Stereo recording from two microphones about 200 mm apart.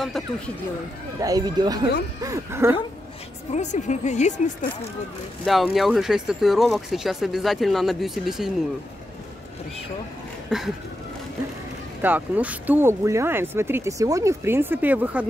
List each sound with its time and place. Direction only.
1.2 s speech: 20° right (ahead or behind)
3.5 s speech: 35° left (ahead or behind)
5.4 s speech: centre (ahead or behind)
10.5 s speech: centre (ahead or behind)
12.0 s speech: 10° right (ahead or behind)